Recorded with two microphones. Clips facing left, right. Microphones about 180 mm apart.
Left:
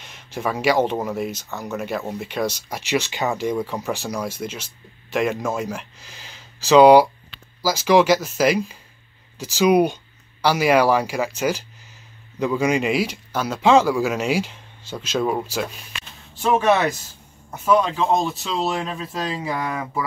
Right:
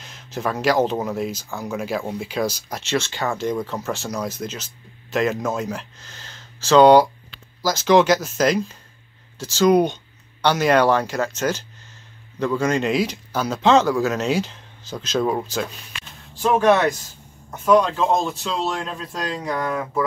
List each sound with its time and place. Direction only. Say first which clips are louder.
0.0 s speech: even; centre (ahead or behind)
2.9 s speech: left 1 dB; 15° left (ahead or behind)